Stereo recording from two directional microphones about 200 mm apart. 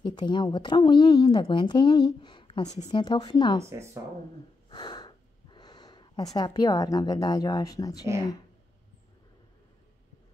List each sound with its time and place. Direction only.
0.0 s a woman's voice: 20° left (ahead or behind)
3.6 s speech: 15° right (ahead or behind)
4.6 s a sound: 20° left (ahead or behind)